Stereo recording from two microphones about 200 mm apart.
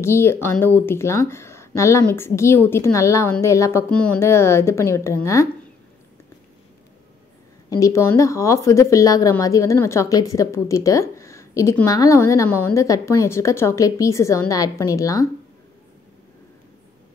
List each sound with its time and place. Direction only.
0.0 s a woman's voice: 10° left (ahead or behind)
7.7 s a woman's voice: 15° left (ahead or behind)